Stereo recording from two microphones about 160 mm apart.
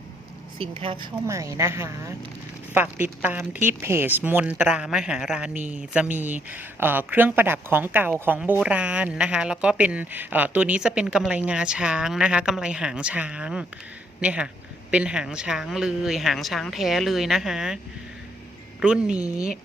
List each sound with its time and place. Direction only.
0.6 s speech: 35° right (ahead or behind)
1.3 s a woman's voice: 20° right (ahead or behind); by 17.7 s 5° right (ahead or behind)
18.8 s speech: 5° right (ahead or behind)